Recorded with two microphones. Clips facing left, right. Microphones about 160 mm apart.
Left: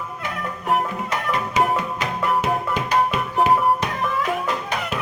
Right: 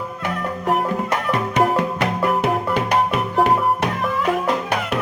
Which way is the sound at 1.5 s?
65° right (ahead or behind).